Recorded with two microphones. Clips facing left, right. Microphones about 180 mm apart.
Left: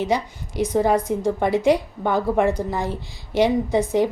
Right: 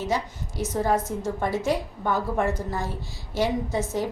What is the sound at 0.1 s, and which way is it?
A woman's voice, 15° left (ahead or behind).